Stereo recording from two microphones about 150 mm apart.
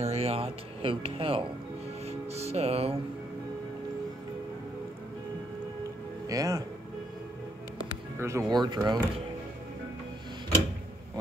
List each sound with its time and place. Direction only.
0.0 s speech: 45° right (ahead or behind)
6.2 s speech: 20° right (ahead or behind)
8.2 s speech: 20° right (ahead or behind)